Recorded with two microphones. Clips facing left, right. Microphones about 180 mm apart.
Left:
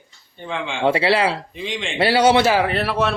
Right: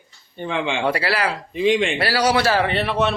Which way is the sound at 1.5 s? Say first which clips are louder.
Right 10 dB; 65° right (ahead or behind).